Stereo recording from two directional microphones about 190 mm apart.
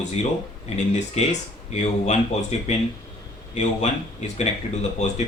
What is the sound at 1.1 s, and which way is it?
Speech, 35° left (ahead or behind).